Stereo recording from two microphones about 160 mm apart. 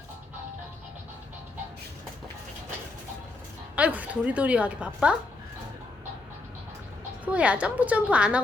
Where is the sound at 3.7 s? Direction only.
10° right (ahead or behind).